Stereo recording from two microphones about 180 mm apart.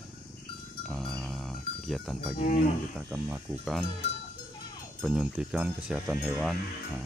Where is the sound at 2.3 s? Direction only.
40° left (ahead or behind).